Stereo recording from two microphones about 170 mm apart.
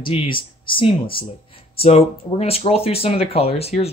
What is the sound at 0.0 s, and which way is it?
Speech, 30° left (ahead or behind).